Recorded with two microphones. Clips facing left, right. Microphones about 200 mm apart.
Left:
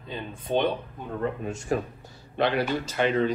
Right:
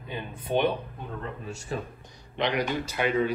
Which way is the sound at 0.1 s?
10° right (ahead or behind).